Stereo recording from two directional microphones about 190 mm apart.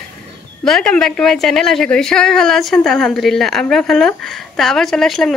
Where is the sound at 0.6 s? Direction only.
5° left (ahead or behind).